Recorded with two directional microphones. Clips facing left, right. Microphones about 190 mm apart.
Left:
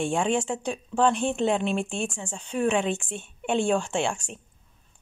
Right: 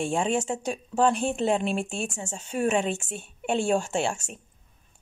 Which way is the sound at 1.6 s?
5° right (ahead or behind).